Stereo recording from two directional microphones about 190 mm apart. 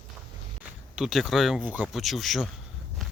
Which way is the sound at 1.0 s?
Centre (ahead or behind).